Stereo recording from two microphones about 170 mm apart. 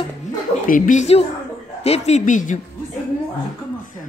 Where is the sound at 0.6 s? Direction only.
50° left (ahead or behind).